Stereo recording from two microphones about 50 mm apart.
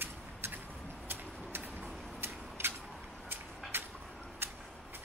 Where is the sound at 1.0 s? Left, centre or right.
Right.